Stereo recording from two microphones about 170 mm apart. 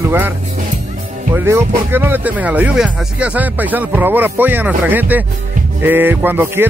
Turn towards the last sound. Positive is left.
turn(degrees=-10)  # may be behind; listen again after turning